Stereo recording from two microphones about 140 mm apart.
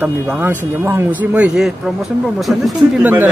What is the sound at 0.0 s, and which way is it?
Speech, 10° right (ahead or behind).